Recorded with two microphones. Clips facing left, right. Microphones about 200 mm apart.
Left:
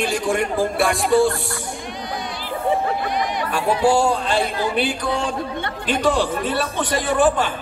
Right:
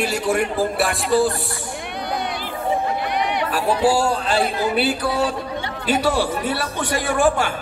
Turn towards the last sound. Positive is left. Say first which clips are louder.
# left 1 dB
turn(degrees=-10)  # may be behind; listen again after turning